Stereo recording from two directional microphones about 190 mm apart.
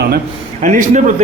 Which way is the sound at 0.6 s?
40° right (ahead or behind).